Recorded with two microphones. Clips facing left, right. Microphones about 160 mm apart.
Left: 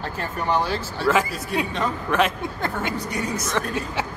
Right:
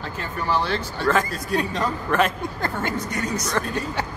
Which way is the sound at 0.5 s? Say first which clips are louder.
Even; 10° left (ahead or behind).